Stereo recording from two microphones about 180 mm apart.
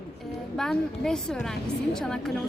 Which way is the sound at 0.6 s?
5° left (ahead or behind).